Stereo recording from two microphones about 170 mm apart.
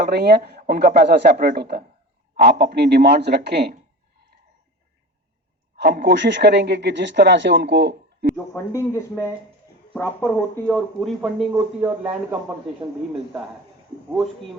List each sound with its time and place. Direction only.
0.0 s speech: 70° right (ahead or behind)
5.7 s a woman's voice: 55° right (ahead or behind)
6.1 s speech: 90° right
8.5 s speech: 15° left (ahead or behind)
10.7 s speech: centre (ahead or behind)